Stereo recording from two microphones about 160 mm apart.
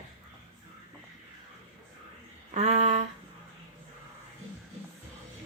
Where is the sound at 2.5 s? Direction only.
45° right (ahead or behind).